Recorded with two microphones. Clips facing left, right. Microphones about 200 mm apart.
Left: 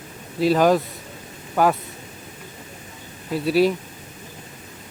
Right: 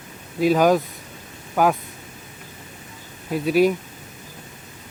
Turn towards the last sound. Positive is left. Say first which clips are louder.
# right 1 dB
turn(degrees=-50)  # may be behind; listen again after turning